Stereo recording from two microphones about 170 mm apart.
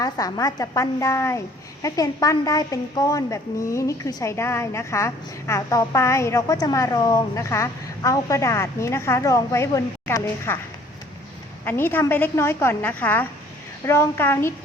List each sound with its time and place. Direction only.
0.0 s a woman's voice: 20° left (ahead or behind)
11.6 s a woman's voice: 10° left (ahead or behind)